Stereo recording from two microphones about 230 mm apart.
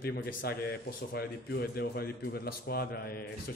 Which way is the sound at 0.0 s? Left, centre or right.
Left.